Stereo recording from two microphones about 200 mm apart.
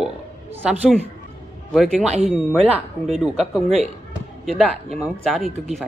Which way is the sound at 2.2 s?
Centre (ahead or behind).